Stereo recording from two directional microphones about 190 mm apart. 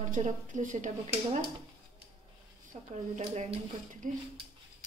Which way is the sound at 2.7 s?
40° right (ahead or behind).